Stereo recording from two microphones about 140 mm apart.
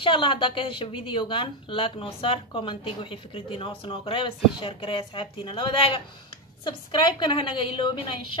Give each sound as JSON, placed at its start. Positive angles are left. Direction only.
{"t": 0.0, "sound": "speech", "side_deg": 35}